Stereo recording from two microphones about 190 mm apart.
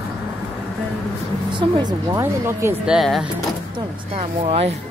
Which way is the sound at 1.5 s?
20° right (ahead or behind).